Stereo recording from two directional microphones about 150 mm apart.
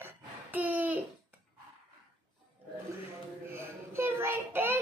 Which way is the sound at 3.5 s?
15° right (ahead or behind).